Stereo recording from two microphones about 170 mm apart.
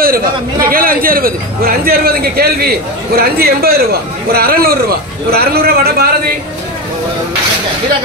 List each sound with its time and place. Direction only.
0.0 s a man's voice: 60° right (ahead or behind)